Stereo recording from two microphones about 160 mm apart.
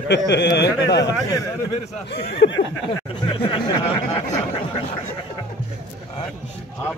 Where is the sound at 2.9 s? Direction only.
30° left (ahead or behind).